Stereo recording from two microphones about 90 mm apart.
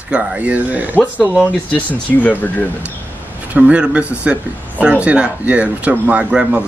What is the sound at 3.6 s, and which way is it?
Speech, 15° right (ahead or behind).